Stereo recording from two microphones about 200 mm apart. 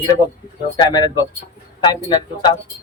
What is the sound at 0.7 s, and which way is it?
Speech, 20° left (ahead or behind).